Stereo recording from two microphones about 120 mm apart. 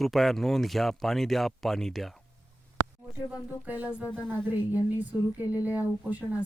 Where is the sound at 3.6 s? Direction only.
15° right (ahead or behind).